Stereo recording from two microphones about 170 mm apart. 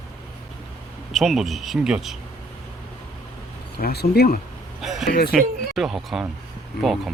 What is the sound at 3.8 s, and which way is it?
Speech, 65° left (ahead or behind).